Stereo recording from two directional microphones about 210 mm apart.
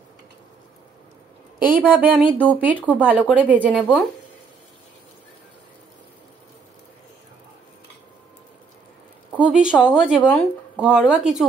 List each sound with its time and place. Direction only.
1.7 s speech: 10° right (ahead or behind)
9.4 s speech: 5° right (ahead or behind)